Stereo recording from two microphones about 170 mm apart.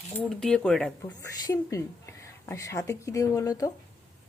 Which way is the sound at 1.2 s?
20° left (ahead or behind).